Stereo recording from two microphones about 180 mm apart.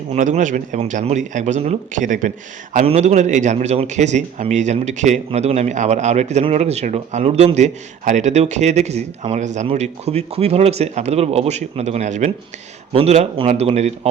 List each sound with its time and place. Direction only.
0.1 s a man's voice: 40° right (ahead or behind)